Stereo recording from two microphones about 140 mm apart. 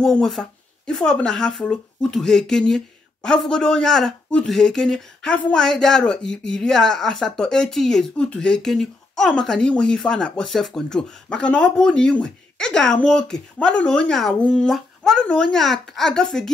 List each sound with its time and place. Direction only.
0.0 s speech: centre (ahead or behind)